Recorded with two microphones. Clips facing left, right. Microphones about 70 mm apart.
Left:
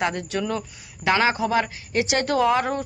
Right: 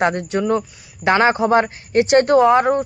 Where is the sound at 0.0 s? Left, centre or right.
Right.